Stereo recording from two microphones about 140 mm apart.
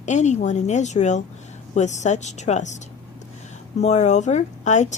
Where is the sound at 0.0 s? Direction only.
60° left (ahead or behind).